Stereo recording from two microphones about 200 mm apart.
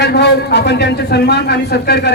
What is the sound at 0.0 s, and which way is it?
A man's voice, 55° left (ahead or behind).